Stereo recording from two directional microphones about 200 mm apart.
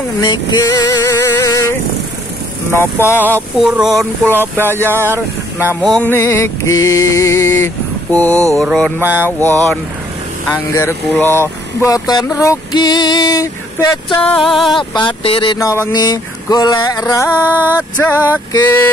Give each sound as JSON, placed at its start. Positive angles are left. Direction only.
{"t": 0.2, "sound": "vehicle", "side_deg": 20}
{"t": 2.7, "sound": "music", "side_deg": 10}
{"t": 3.5, "sound": "speech", "side_deg": 0}
{"t": 4.6, "sound": "music", "side_deg": 10}
{"t": 4.9, "sound": "a sound", "side_deg": -10}
{"t": 5.8, "sound": "music", "side_deg": 5}
{"t": 8.4, "sound": "a sound", "side_deg": -15}
{"t": 8.6, "sound": "music", "side_deg": 5}
{"t": 12.4, "sound": "female singing", "side_deg": 20}
{"t": 14.2, "sound": "speech", "side_deg": 5}
{"t": 14.7, "sound": "female singing", "side_deg": 25}
{"t": 17.3, "sound": "a sound", "side_deg": -10}
{"t": 18.5, "sound": "music", "side_deg": 15}